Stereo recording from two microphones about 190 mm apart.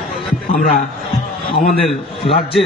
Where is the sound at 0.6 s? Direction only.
45° left (ahead or behind).